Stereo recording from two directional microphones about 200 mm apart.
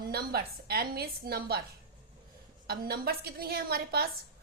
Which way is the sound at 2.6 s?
50° right (ahead or behind).